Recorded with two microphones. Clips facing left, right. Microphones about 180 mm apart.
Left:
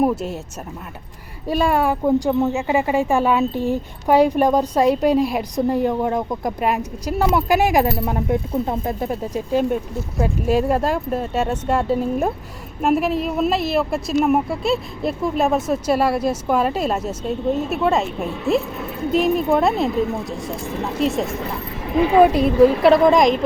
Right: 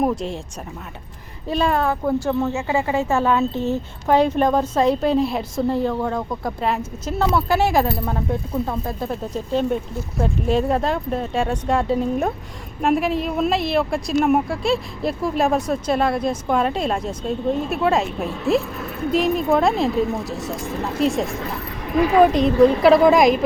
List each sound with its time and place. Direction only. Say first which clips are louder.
0.0 s speech: left 2 dB; 5° left (ahead or behind)
1.5 s a woman's voice: left 2 dB; 10° left (ahead or behind)
21.9 s speech: left 1 dB; 25° left (ahead or behind)
22.2 s a woman's voice: left 1 dB; 5° left (ahead or behind)